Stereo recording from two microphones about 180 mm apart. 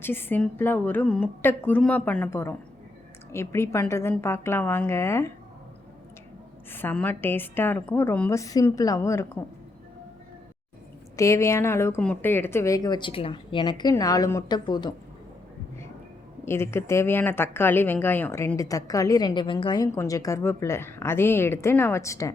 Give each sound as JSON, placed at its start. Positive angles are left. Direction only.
{"t": 0.0, "sound": "speech", "side_deg": 10}
{"t": 6.7, "sound": "speech", "side_deg": 10}
{"t": 11.2, "sound": "speech", "side_deg": 15}
{"t": 16.5, "sound": "speech", "side_deg": 15}